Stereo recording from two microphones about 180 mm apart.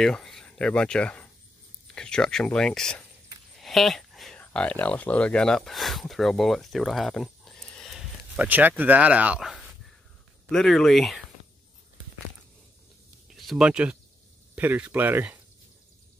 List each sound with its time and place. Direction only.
0.0 s speech: centre (ahead or behind)
13.3 s speech: centre (ahead or behind)